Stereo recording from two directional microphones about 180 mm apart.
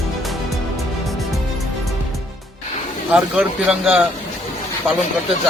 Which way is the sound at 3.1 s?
5° right (ahead or behind).